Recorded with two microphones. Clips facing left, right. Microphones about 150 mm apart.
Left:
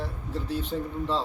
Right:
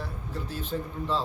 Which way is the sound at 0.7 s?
5° left (ahead or behind).